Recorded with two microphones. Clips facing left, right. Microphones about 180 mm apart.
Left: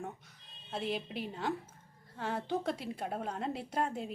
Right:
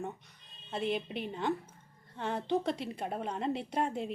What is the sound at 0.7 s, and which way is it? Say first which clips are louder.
A woman's voice: right 3 dB; centre (ahead or behind).